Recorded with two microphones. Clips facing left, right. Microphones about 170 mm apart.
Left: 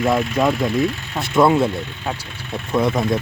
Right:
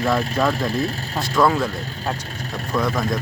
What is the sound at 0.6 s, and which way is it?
Speech, 35° right (ahead or behind).